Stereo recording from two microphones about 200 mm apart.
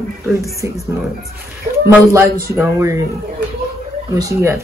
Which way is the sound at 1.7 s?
35° right (ahead or behind).